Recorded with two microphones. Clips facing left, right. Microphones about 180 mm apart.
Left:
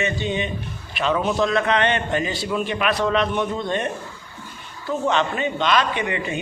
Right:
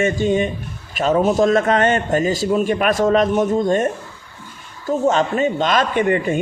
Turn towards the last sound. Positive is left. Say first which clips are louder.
# right 8 dB
turn(degrees=-45)  # may be behind; listen again after turning